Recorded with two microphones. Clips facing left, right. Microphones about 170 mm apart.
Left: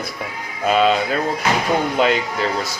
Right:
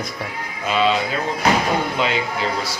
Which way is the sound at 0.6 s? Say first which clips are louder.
Left 3 dB; 50° left (ahead or behind).